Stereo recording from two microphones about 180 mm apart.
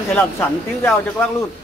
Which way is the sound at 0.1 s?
5° left (ahead or behind).